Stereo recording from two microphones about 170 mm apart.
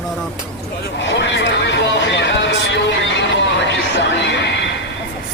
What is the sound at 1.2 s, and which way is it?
Speech, 90° left.